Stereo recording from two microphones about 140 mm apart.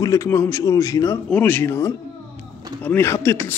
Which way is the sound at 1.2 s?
10° left (ahead or behind).